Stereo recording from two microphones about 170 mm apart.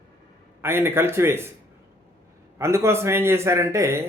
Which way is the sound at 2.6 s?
15° right (ahead or behind).